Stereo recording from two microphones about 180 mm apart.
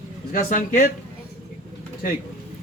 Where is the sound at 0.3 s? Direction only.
50° left (ahead or behind).